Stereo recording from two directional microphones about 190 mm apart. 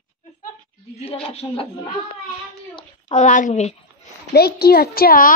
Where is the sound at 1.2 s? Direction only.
30° left (ahead or behind).